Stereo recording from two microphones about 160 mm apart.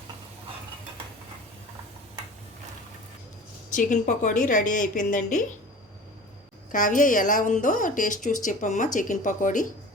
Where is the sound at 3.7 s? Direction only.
50° left (ahead or behind).